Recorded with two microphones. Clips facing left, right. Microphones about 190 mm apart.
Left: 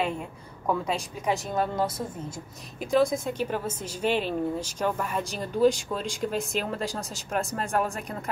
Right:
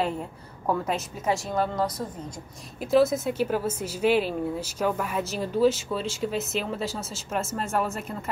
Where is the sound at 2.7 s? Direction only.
5° right (ahead or behind).